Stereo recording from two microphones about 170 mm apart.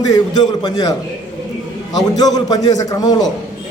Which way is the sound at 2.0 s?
20° left (ahead or behind).